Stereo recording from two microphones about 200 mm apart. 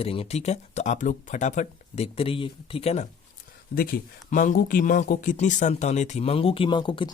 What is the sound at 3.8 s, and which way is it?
Speech, 45° left (ahead or behind).